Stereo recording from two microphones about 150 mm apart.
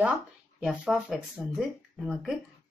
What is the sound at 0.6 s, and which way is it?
Speech, 5° right (ahead or behind).